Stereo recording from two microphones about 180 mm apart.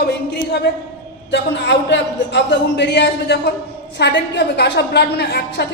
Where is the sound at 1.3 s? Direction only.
75° left (ahead or behind).